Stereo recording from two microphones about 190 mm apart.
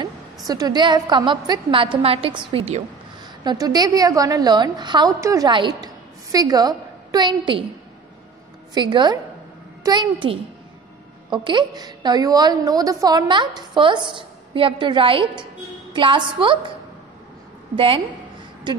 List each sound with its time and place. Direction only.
0.5 s a woman's voice: 20° right (ahead or behind)
3.4 s a woman's voice: 20° right (ahead or behind)
8.7 s a woman's voice: 25° right (ahead or behind)
17.7 s a woman's voice: 30° right (ahead or behind)